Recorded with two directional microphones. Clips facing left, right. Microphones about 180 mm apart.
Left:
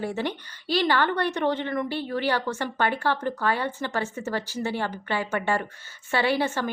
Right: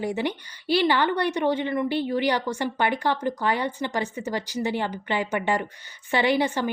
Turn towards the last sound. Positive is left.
turn(degrees=-15)  # may be behind; listen again after turning